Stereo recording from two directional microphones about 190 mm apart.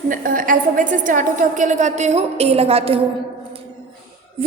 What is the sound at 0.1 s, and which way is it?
A woman's voice, 45° right (ahead or behind).